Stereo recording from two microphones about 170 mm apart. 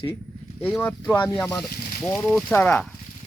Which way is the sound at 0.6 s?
10° left (ahead or behind).